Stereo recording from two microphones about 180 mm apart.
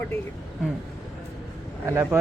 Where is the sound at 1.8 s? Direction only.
15° right (ahead or behind).